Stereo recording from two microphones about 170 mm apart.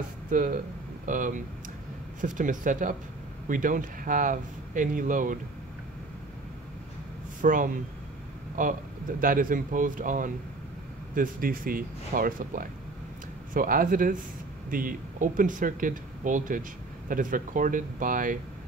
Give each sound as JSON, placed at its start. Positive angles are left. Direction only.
{"t": 0.3, "sound": "speech", "side_deg": -55}
{"t": 7.4, "sound": "speech", "side_deg": -50}